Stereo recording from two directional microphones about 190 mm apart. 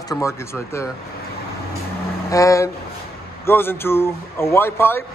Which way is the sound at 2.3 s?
15° left (ahead or behind).